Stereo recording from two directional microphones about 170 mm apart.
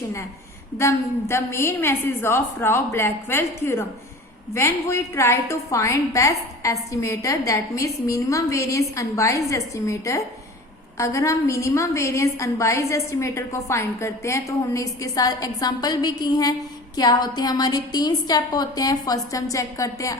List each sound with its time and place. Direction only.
0.8 s a woman's voice: 15° left (ahead or behind)